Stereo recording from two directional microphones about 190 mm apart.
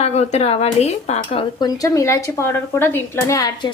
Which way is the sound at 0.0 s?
35° left (ahead or behind).